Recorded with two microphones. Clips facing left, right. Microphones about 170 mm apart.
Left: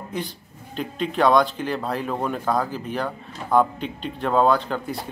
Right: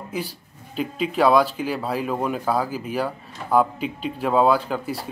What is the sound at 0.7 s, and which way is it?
Speech, 5° right (ahead or behind).